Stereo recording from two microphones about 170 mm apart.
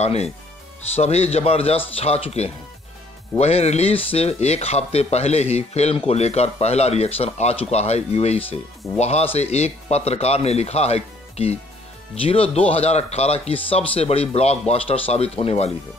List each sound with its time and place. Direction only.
0.0 s speech: 40° left (ahead or behind)